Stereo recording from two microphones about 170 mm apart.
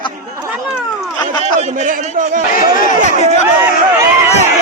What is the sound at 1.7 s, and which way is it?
Speech, 50° right (ahead or behind).